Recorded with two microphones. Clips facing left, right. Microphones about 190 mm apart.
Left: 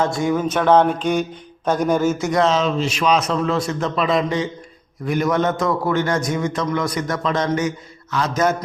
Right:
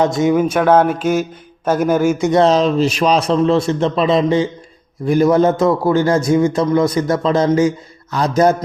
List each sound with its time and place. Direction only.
0.0 s a sound: 20° right (ahead or behind)
2.2 s a man's voice: 25° right (ahead or behind)
2.5 s a man's voice: 40° right (ahead or behind)